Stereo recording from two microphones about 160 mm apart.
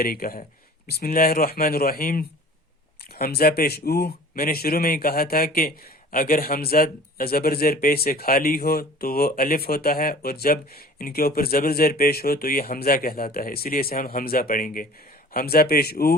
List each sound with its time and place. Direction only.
0.0 s speech: 65° left (ahead or behind)